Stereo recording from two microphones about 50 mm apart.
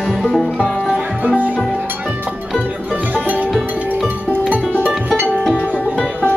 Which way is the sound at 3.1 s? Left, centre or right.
Right.